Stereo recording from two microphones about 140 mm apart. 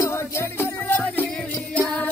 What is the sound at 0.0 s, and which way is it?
Music, 15° left (ahead or behind).